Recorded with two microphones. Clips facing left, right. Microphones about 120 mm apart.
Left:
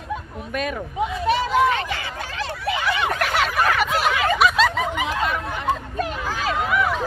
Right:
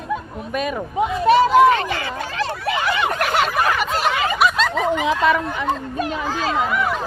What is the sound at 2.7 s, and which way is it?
Turkey, 55° right (ahead or behind).